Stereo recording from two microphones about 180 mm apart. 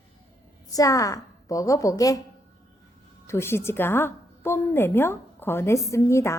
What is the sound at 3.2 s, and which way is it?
A woman's voice, 15° left (ahead or behind).